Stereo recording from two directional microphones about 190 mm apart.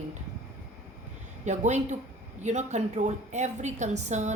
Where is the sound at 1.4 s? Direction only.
40° right (ahead or behind).